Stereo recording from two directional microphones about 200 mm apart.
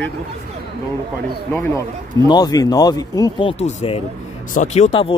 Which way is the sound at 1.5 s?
15° left (ahead or behind).